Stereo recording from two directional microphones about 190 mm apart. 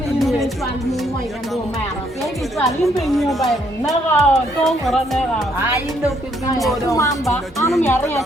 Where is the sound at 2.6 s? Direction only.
Centre (ahead or behind).